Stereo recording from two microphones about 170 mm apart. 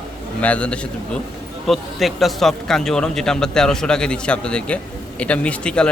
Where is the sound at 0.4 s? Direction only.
5° left (ahead or behind).